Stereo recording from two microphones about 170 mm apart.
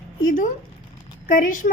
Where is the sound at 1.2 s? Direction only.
50° left (ahead or behind).